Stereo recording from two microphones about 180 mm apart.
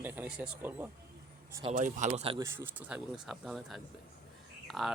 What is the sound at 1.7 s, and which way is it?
Speech, 40° right (ahead or behind).